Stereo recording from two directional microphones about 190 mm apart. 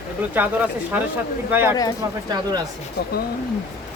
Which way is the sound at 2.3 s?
20° right (ahead or behind).